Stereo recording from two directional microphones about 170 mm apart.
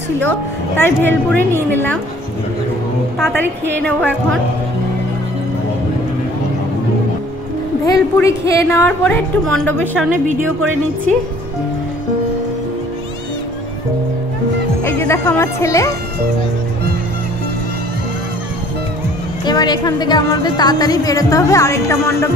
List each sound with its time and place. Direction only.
0.2 s a woman's voice: 10° left (ahead or behind)
3.7 s a woman's voice: 10° left (ahead or behind)
7.8 s a woman's voice: 20° left (ahead or behind)
14.8 s speech: 15° left (ahead or behind)
19.4 s a woman's voice: 25° left (ahead or behind)